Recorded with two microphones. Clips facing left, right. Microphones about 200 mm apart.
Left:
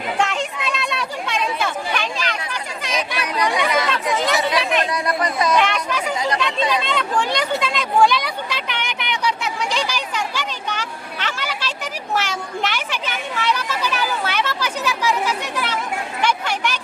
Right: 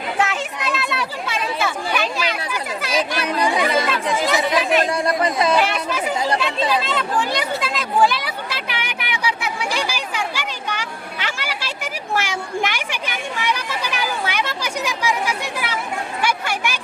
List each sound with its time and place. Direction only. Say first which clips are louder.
0.2 s a sound: right 1 dB; 5° right (ahead or behind)
3.2 s chatter: left 1 dB; 30° right (ahead or behind)
4.1 s chatter: right 1 dB; 10° right (ahead or behind)
4.9 s speech: right 2 dB; 30° right (ahead or behind)
5.5 s speech: even; 5° right (ahead or behind)
6.8 s a sound: even; 5° right (ahead or behind)